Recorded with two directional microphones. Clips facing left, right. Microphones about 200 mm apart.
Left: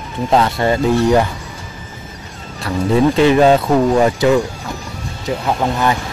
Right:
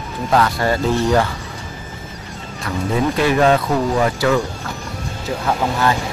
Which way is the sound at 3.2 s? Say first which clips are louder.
Left 3 dB; 25° left (ahead or behind).